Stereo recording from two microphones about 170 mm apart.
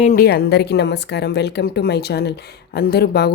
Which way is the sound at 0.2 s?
65° left (ahead or behind).